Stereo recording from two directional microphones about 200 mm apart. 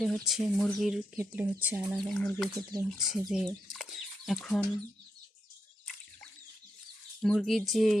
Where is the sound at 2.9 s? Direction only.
Centre (ahead or behind).